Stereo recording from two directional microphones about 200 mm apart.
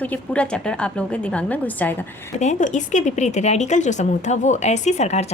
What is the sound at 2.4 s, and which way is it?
Speech, 35° left (ahead or behind).